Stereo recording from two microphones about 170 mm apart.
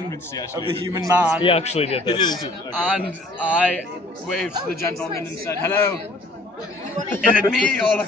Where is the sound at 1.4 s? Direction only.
35° left (ahead or behind).